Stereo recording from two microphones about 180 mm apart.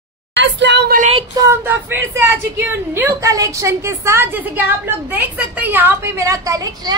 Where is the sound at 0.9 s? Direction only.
40° right (ahead or behind).